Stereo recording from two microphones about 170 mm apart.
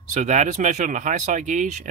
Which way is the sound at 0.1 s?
45° right (ahead or behind).